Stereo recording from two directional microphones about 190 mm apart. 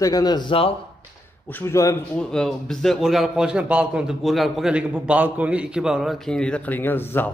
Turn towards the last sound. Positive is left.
turn(degrees=10)  # may be behind; listen again after turning